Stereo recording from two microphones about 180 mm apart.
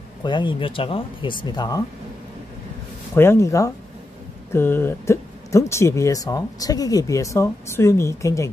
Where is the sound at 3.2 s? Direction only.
15° left (ahead or behind).